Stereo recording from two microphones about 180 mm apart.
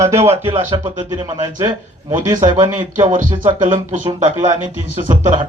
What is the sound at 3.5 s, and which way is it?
Speech, 25° right (ahead or behind).